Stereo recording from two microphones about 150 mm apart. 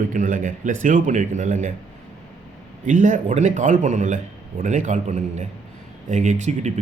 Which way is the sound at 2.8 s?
55° right (ahead or behind).